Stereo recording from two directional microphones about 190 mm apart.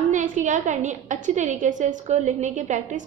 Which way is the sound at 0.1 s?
40° right (ahead or behind).